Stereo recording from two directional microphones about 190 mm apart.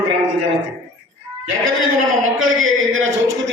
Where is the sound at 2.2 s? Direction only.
90° right.